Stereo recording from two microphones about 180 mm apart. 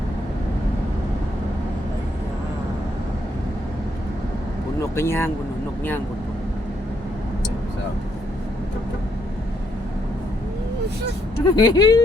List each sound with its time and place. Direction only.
4.8 s speech: 15° left (ahead or behind)
11.5 s speech: 25° left (ahead or behind)